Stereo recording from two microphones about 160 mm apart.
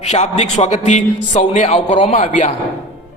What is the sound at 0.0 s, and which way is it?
A man's voice, 45° left (ahead or behind).